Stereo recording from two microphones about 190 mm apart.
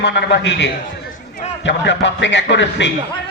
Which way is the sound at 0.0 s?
65° left (ahead or behind).